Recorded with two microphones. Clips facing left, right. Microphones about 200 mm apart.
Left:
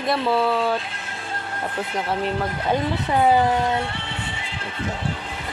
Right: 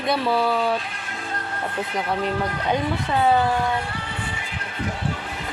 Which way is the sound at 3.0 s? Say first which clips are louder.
Left 2 dB; 15° left (ahead or behind).